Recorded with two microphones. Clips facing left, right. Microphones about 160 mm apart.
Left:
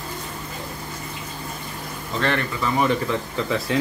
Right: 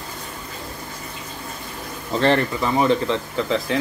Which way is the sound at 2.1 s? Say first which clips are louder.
Right 6 dB; 35° right (ahead or behind).